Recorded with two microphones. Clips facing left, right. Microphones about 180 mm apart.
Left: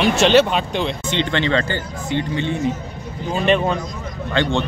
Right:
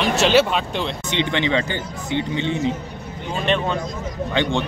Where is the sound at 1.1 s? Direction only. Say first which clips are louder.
Even; 15° right (ahead or behind).